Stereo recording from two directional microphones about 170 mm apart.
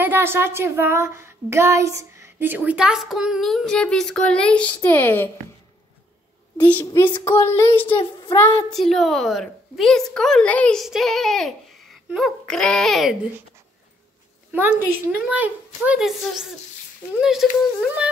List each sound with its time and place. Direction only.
0.0 s speech: 15° right (ahead or behind); by 5.3 s 15° left (ahead or behind)
6.6 s speech: 10° left (ahead or behind)
7.9 s child singing: 30° left (ahead or behind)
8.4 s a woman's voice: 5° left (ahead or behind)
14.5 s a woman's voice: 10° right (ahead or behind)